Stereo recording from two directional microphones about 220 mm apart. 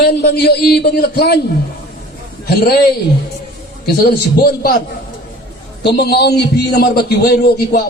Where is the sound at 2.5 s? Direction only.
45° left (ahead or behind).